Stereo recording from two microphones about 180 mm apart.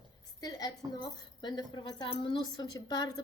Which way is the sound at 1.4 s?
25° left (ahead or behind).